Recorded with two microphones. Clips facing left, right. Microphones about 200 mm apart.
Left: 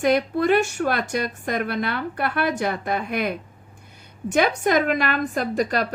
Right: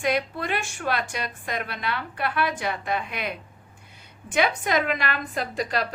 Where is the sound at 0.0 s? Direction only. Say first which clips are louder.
Left 6 dB; 45° left (ahead or behind).